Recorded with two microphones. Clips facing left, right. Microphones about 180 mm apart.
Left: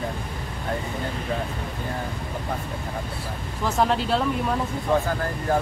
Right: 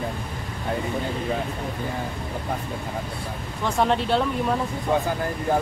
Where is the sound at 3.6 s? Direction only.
Centre (ahead or behind).